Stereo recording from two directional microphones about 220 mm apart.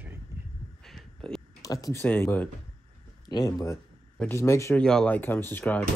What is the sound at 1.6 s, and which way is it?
Speech, 15° left (ahead or behind).